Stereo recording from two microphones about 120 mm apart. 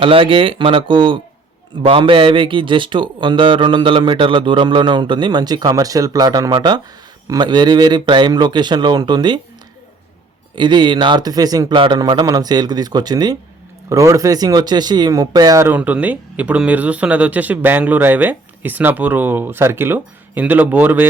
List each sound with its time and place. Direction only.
0.0 s a man's voice: 45° right (ahead or behind)
10.5 s a man's voice: 40° right (ahead or behind)
15.6 s speech: 15° right (ahead or behind)